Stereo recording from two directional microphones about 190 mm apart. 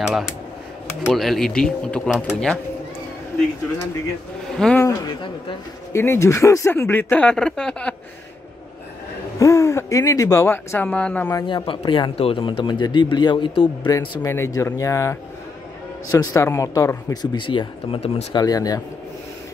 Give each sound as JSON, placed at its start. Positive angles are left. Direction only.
{"t": 0.0, "sound": "a sound", "side_deg": 0}
{"t": 1.0, "sound": "speech", "side_deg": 0}
{"t": 4.6, "sound": "speech", "side_deg": 5}
{"t": 4.8, "sound": "speech", "side_deg": 25}
{"t": 9.4, "sound": "speech", "side_deg": 15}
{"t": 18.4, "sound": "speech", "side_deg": 20}